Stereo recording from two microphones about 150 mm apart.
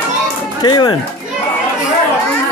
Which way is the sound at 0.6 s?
30° left (ahead or behind).